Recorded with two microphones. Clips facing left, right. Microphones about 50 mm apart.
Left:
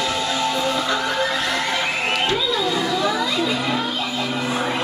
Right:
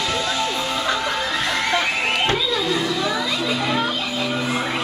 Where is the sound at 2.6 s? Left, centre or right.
Centre.